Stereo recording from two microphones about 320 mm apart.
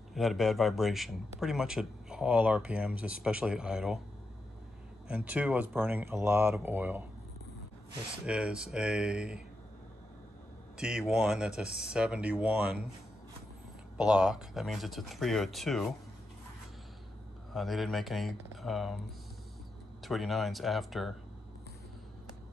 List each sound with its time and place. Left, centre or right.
0.1 s speech: centre
5.1 s speech: centre
8.3 s speech: centre
10.8 s speech: centre
13.9 s speech: centre
17.5 s speech: centre
20.0 s speech: centre